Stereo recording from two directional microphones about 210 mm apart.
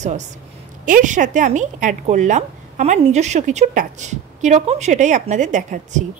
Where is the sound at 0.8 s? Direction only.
40° right (ahead or behind).